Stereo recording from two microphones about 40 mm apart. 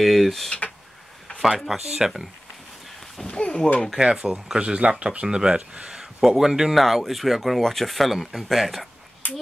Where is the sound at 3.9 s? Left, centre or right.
Centre.